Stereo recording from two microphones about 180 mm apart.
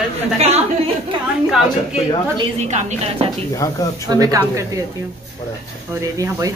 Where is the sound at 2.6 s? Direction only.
40° right (ahead or behind).